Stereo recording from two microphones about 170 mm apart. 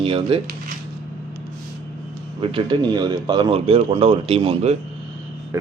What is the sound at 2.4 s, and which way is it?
Speech, 30° right (ahead or behind).